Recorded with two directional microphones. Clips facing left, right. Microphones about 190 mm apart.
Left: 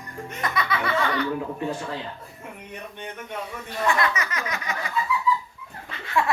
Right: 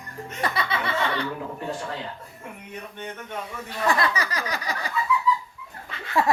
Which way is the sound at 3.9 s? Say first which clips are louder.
Right 1 dB; 35° right (ahead or behind).